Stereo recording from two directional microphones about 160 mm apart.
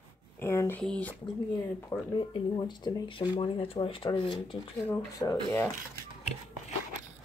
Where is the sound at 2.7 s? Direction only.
30° left (ahead or behind).